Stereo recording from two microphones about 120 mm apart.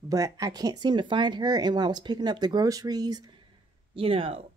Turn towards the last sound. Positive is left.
turn(degrees=-50)  # may be behind; listen again after turning